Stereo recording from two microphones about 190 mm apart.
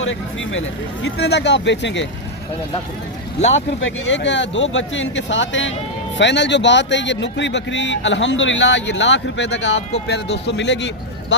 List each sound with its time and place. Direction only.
0.0 s a man's voice: 85° left; by 2.0 s 70° left (ahead or behind)
3.8 s a man's voice: 85° left; by 11.3 s 70° left (ahead or behind)